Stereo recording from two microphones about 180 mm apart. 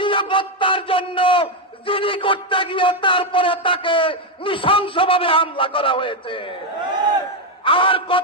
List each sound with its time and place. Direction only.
0.0 s a sound: 25° left (ahead or behind)
1.9 s a man's voice: 30° left (ahead or behind)
7.6 s a man's voice: 30° left (ahead or behind)